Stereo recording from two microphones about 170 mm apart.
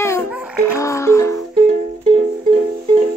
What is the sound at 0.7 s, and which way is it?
Music, 15° left (ahead or behind).